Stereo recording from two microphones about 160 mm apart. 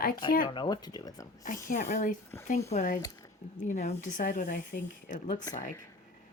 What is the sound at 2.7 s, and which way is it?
Speech, 50° left (ahead or behind).